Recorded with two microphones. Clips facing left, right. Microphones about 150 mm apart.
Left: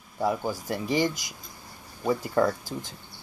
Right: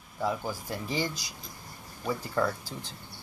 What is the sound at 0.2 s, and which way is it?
Speech, 10° left (ahead or behind).